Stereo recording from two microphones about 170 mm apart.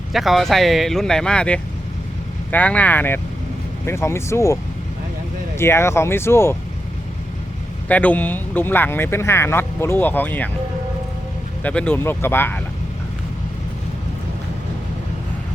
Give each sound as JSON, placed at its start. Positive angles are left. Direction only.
{"t": 0.1, "sound": "speech", "side_deg": 0}
{"t": 5.5, "sound": "speech", "side_deg": 15}
{"t": 7.9, "sound": "speech", "side_deg": 10}
{"t": 11.6, "sound": "speech", "side_deg": 5}